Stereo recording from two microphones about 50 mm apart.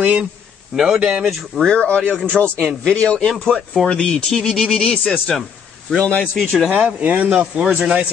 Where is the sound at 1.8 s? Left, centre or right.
Left.